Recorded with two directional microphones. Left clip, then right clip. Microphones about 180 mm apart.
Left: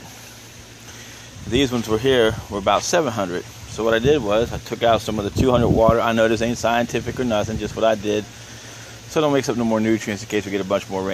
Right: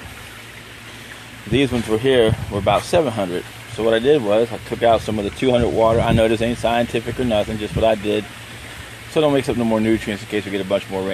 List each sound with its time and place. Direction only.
1.5 s speech: 5° left (ahead or behind)